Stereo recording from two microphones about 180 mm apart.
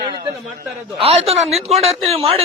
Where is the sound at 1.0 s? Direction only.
35° right (ahead or behind).